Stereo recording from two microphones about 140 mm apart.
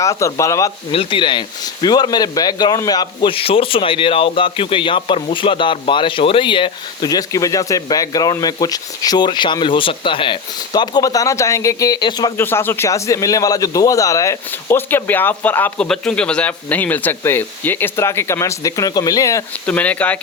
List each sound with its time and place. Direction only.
0.0 s speech: 20° left (ahead or behind)
0.9 s a man's voice: 35° left (ahead or behind)
12.4 s a man's voice: 15° left (ahead or behind)
19.6 s a man's voice: 10° left (ahead or behind)